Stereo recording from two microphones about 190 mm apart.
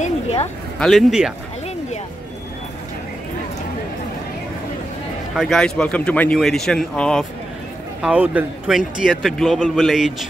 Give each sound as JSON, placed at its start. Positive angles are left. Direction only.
{"t": 0.0, "sound": "a sound", "side_deg": 35}
{"t": 0.7, "sound": "a man's voice", "side_deg": 0}
{"t": 5.3, "sound": "a man's voice", "side_deg": 0}